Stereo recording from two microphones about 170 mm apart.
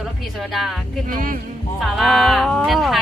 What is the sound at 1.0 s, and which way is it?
Speech, 55° right (ahead or behind).